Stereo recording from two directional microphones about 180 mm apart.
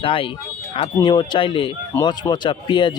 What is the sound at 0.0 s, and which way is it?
A man's voice, 30° left (ahead or behind).